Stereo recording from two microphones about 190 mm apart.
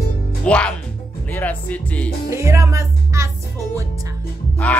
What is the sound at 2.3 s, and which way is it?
Music, 15° right (ahead or behind).